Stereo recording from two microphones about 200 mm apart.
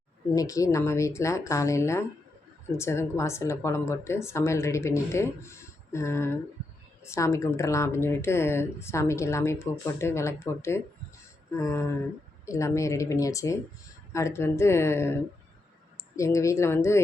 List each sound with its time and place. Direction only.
0.3 s speech: 15° left (ahead or behind)